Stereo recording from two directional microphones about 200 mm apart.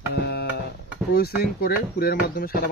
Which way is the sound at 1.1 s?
50° left (ahead or behind).